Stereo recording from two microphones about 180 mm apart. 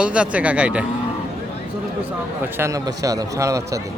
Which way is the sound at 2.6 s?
20° right (ahead or behind).